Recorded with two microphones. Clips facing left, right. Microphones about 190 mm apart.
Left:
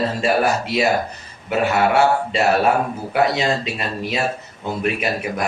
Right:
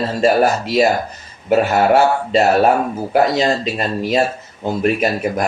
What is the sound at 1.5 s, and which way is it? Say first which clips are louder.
Speech: right 5 dB; 40° right (ahead or behind).